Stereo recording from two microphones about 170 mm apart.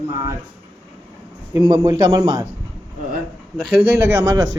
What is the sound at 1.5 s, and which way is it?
Speech, 20° right (ahead or behind).